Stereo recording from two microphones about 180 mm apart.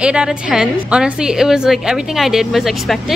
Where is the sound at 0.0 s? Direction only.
5° right (ahead or behind).